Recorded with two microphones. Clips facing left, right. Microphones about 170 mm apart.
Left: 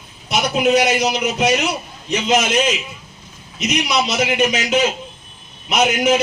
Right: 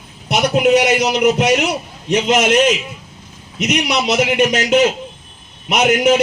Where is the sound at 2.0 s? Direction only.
70° right (ahead or behind).